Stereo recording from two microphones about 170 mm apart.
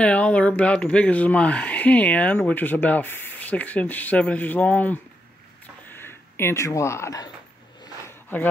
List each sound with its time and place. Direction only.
0.0 s speech: 5° left (ahead or behind)
5.9 s a sound: 15° left (ahead or behind)
8.3 s speech: 10° left (ahead or behind)